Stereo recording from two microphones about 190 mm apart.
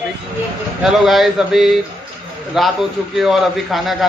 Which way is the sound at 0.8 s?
Centre (ahead or behind).